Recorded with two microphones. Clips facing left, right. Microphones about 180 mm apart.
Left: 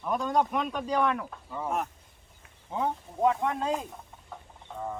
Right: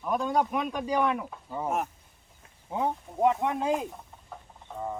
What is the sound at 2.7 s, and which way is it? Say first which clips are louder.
Speech: right 1 dB; 10° right (ahead or behind).